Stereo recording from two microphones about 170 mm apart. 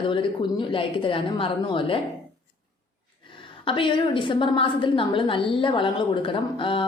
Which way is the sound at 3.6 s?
30° left (ahead or behind).